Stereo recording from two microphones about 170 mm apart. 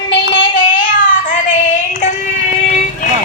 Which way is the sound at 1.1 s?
50° left (ahead or behind).